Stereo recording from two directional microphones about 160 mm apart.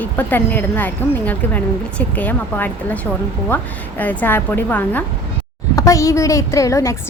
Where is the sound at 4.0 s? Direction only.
10° left (ahead or behind).